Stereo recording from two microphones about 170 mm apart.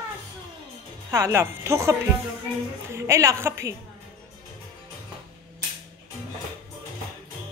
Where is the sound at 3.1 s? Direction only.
15° right (ahead or behind).